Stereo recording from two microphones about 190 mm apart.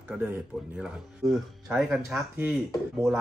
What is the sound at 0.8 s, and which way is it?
A man's voice, centre (ahead or behind).